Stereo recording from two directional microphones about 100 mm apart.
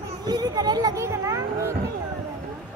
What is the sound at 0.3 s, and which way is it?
Speech, 45° right (ahead or behind).